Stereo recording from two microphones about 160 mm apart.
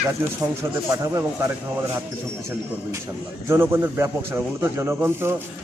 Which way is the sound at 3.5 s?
15° right (ahead or behind).